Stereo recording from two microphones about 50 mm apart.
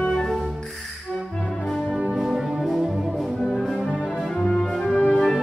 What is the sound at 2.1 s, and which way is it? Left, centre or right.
Music, centre.